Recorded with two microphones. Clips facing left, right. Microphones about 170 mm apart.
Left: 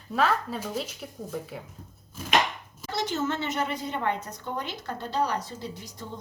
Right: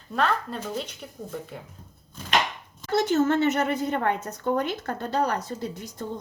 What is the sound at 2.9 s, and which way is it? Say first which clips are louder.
A woman's voice: right 7 dB; 50° right (ahead or behind).